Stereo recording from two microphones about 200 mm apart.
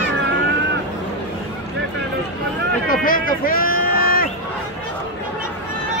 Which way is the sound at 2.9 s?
45° left (ahead or behind).